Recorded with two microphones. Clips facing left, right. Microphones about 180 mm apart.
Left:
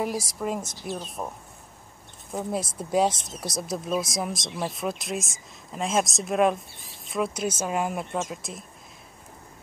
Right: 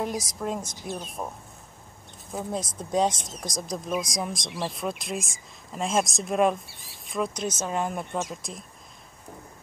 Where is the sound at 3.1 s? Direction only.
25° left (ahead or behind).